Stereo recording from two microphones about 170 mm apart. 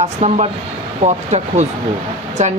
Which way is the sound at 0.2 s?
40° right (ahead or behind).